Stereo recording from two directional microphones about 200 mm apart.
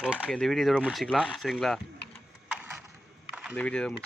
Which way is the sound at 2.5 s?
5° right (ahead or behind).